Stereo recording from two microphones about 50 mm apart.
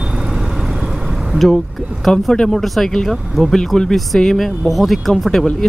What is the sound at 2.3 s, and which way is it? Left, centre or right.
Speech, centre.